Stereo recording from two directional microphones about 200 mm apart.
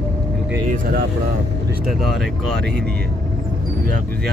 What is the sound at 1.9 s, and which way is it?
Speech, centre (ahead or behind).